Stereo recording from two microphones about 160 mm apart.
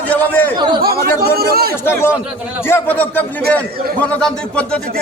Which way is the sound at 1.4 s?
75° right (ahead or behind).